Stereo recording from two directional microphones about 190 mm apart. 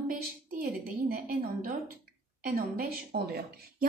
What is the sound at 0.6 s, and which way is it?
A woman's voice, 50° right (ahead or behind).